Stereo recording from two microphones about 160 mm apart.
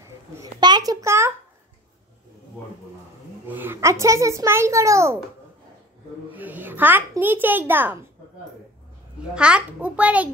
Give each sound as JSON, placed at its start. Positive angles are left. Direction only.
{"t": 0.4, "sound": "a child's voice", "side_deg": -25}
{"t": 3.4, "sound": "a child's voice", "side_deg": -10}
{"t": 6.3, "sound": "a child's voice", "side_deg": -10}
{"t": 9.3, "sound": "a child's voice", "side_deg": -5}